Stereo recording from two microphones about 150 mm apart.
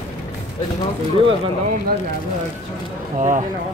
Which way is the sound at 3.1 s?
50° right (ahead or behind).